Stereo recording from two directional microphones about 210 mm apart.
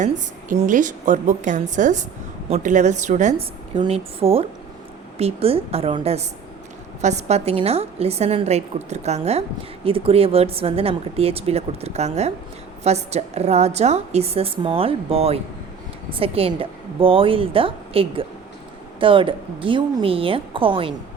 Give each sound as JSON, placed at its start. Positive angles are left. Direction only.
{"t": 0.0, "sound": "a woman's voice", "side_deg": -40}